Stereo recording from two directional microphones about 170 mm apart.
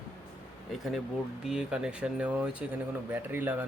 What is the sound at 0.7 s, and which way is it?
Speech, centre (ahead or behind).